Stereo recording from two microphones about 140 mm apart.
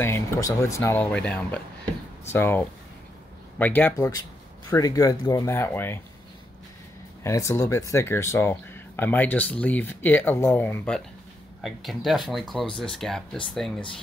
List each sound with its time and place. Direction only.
0.0 s speech: 20° left (ahead or behind)
1.1 s speech: 10° left (ahead or behind)
4.6 s speech: 25° left (ahead or behind)
7.2 s speech: 20° left (ahead or behind)
11.6 s speech: centre (ahead or behind)